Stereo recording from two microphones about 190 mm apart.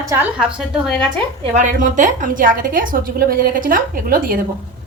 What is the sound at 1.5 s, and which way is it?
A woman's voice, 40° right (ahead or behind).